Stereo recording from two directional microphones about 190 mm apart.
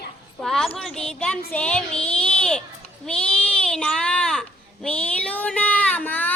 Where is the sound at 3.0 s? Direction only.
5° left (ahead or behind).